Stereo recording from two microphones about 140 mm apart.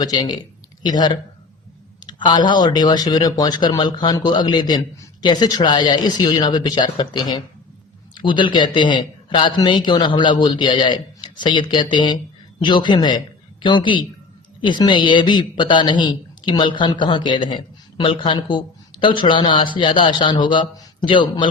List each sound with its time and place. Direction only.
0.0 s a man's voice: 30° left (ahead or behind)